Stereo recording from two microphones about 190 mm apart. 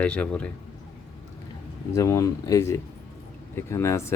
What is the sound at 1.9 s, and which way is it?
Speech, 15° left (ahead or behind).